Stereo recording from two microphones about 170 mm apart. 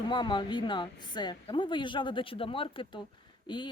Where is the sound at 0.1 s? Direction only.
25° left (ahead or behind).